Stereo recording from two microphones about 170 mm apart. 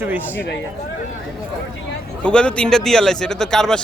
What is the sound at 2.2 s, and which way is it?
A man's voice, 5° left (ahead or behind).